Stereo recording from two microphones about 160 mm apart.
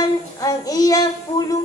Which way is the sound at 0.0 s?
25° left (ahead or behind).